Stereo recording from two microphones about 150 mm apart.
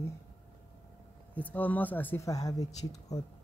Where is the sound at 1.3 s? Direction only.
10° left (ahead or behind).